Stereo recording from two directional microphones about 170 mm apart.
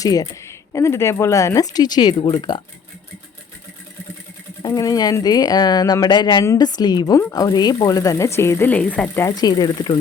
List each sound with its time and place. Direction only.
0.0 s a woman's voice: 20° left (ahead or behind)
4.6 s a woman's voice: 20° left (ahead or behind)